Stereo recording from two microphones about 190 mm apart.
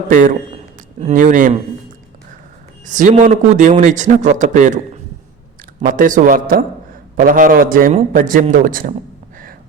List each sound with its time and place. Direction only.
0.1 s a man's voice: 45° right (ahead or behind)
0.5 s a sound: 35° right (ahead or behind)
2.8 s a man's voice: 40° right (ahead or behind)
5.8 s a man's voice: 45° right (ahead or behind)